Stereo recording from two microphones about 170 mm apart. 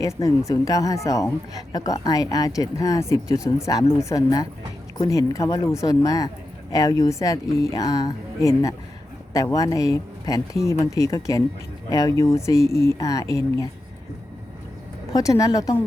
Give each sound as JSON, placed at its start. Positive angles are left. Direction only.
{"t": 0.0, "sound": "a woman's voice", "side_deg": 20}
{"t": 15.1, "sound": "a woman's voice", "side_deg": 20}